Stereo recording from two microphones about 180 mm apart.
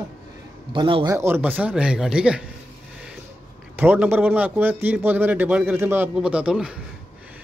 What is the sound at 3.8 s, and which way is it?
A man's voice, 10° right (ahead or behind).